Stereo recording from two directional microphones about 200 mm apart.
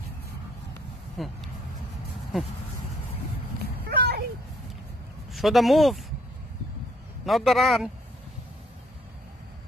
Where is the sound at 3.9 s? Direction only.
55° right (ahead or behind).